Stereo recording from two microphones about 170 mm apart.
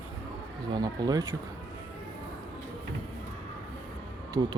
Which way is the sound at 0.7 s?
25° right (ahead or behind).